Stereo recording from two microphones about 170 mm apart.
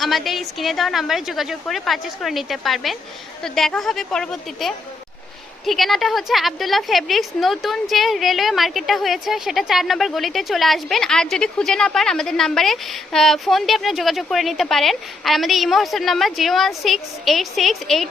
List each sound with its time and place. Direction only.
0.0 s a woman's voice: centre (ahead or behind)